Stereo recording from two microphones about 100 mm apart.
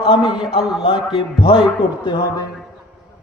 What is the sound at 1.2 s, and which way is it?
Speech, 55° left (ahead or behind).